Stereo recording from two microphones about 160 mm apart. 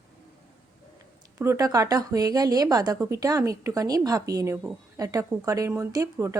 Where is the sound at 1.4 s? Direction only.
20° right (ahead or behind).